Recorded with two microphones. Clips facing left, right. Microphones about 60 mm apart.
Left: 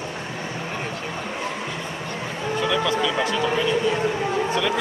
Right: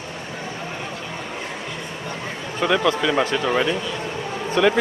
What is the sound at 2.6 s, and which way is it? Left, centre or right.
Speech, right.